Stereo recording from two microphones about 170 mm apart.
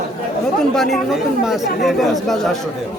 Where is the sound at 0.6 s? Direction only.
Centre (ahead or behind).